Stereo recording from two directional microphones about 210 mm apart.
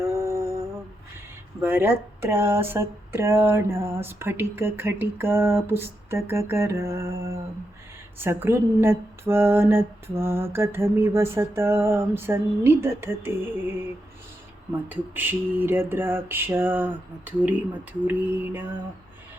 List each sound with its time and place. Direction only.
0.0 s humming: 15° right (ahead or behind)
1.6 s speech: 10° right (ahead or behind)
14.8 s speech: 10° right (ahead or behind)